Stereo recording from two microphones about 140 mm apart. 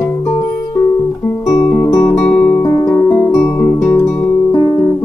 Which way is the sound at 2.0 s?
5° left (ahead or behind).